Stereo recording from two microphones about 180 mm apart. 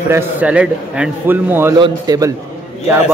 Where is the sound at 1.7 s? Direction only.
20° right (ahead or behind).